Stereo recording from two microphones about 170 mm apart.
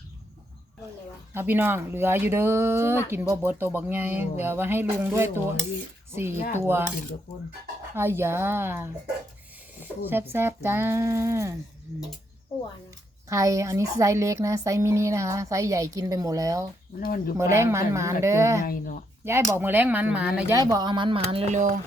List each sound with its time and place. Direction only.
1.3 s a woman's voice: 15° right (ahead or behind)
7.9 s a woman's voice: 15° right (ahead or behind)
13.2 s a woman's voice: 20° right (ahead or behind)
17.0 s speech: 55° left (ahead or behind)
17.3 s a woman's voice: 15° right (ahead or behind)
18.6 s speech: 55° left (ahead or behind)
19.2 s a woman's voice: 15° right (ahead or behind)
20.6 s speech: 25° right (ahead or behind); by 21.8 s 45° right (ahead or behind)